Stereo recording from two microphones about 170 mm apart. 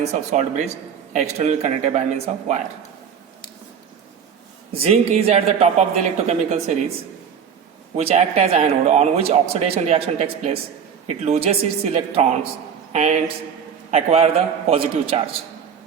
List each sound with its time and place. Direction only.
0.0 s speech: 40° right (ahead or behind)
4.7 s speech: 35° right (ahead or behind)
7.9 s speech: 40° right (ahead or behind)